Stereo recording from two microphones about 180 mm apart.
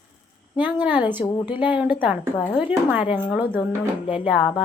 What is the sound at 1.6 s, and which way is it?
A woman's voice, 10° right (ahead or behind).